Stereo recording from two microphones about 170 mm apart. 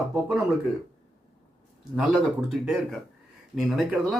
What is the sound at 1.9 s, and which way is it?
Speech, 5° right (ahead or behind).